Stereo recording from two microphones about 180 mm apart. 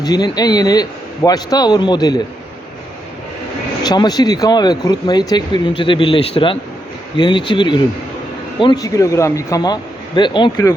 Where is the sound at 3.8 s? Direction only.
20° left (ahead or behind).